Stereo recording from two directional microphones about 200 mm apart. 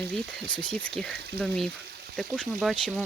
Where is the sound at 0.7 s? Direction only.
5° left (ahead or behind).